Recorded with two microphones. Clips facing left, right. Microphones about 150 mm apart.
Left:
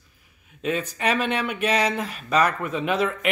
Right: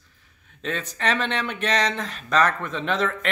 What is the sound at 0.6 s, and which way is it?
Speech, 10° left (ahead or behind).